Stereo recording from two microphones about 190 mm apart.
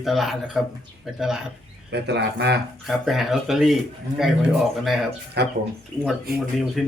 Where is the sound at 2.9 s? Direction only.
Centre (ahead or behind).